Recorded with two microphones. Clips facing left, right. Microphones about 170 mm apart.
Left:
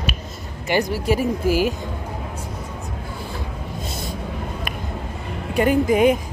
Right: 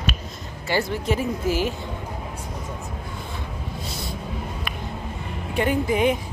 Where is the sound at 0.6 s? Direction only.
15° left (ahead or behind).